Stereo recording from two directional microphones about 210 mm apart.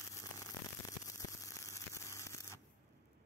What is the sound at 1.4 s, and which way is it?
Hum, 15° left (ahead or behind).